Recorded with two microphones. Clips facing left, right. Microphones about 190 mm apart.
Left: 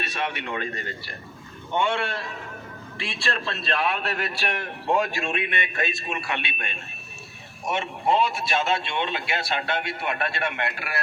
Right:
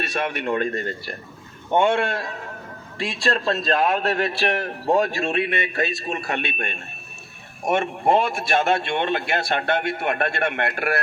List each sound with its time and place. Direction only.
0.0 s a man's voice: 50° right (ahead or behind)